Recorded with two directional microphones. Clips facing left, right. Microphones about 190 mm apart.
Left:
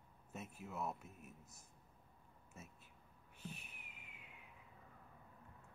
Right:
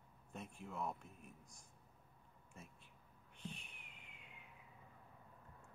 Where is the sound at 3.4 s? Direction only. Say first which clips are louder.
Right 1 dB; 5° left (ahead or behind).